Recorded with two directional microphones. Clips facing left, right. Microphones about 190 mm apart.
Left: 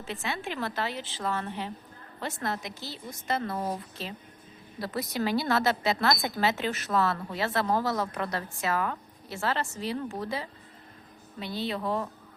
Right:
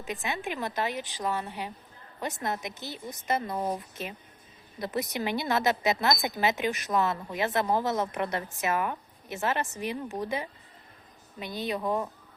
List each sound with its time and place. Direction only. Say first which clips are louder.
0.0 s a woman's voice: right 1 dB; 15° right (ahead or behind)